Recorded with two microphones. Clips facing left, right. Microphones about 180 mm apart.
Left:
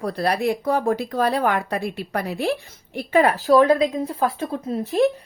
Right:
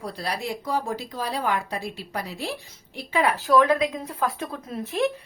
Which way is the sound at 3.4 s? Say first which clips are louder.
Left 2 dB; 35° left (ahead or behind).